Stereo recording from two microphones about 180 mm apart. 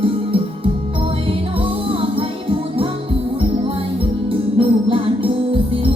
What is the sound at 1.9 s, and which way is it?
Music, 30° right (ahead or behind).